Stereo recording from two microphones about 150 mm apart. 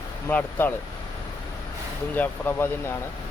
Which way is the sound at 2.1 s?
15° left (ahead or behind).